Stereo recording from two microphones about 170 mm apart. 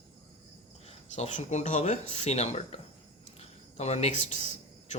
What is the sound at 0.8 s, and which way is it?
Speech, 45° left (ahead or behind).